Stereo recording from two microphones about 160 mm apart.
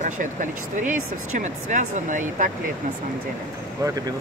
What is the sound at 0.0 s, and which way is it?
Speech, 55° right (ahead or behind).